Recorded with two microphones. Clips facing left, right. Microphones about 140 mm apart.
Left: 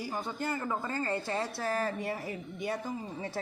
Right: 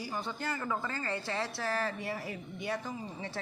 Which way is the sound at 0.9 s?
45° left (ahead or behind).